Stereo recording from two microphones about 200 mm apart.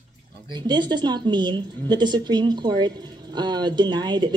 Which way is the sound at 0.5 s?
20° right (ahead or behind).